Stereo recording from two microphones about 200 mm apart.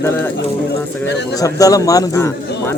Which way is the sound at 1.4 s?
15° left (ahead or behind).